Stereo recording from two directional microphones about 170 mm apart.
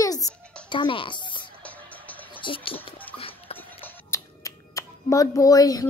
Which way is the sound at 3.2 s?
35° left (ahead or behind).